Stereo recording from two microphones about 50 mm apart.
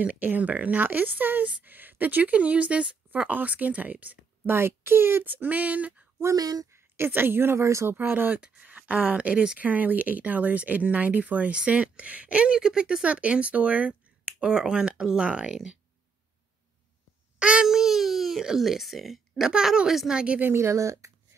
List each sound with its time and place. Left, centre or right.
0.0 s speech: right
3.3 s speech: right
4.5 s speech: right
6.2 s a woman's voice: right
7.1 s speech: right
7.6 s speech: right
7.9 s speech: right
8.6 s speech: right; by 13.0 s centre
13.0 s speech: right
17.4 s child singing: centre
17.6 s a sound: centre
18.6 s speech: centre
19.5 s speech: centre
20.5 s speech: right